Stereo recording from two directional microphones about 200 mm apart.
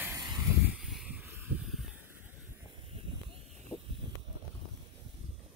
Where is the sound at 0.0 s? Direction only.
15° right (ahead or behind).